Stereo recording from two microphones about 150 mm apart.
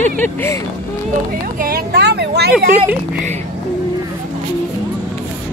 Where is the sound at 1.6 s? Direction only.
85° right.